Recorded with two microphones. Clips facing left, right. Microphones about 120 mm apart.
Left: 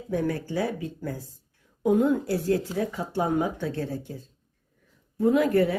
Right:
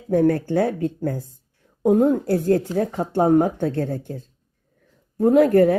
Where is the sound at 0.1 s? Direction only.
50° right (ahead or behind).